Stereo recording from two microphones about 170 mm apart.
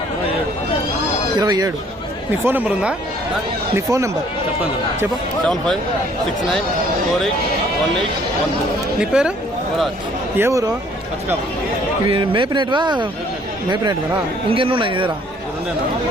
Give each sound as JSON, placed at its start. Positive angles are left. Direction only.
{"t": 1.4, "sound": "speech", "side_deg": -20}
{"t": 2.4, "sound": "speech", "side_deg": -10}
{"t": 9.0, "sound": "speech", "side_deg": -5}
{"t": 10.3, "sound": "speech", "side_deg": -15}
{"t": 12.0, "sound": "speech", "side_deg": -30}
{"t": 14.5, "sound": "speech", "side_deg": -30}